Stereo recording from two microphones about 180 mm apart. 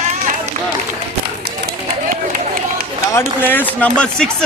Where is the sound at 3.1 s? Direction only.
10° left (ahead or behind).